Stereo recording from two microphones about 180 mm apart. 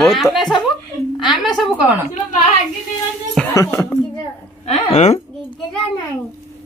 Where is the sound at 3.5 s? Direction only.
15° left (ahead or behind).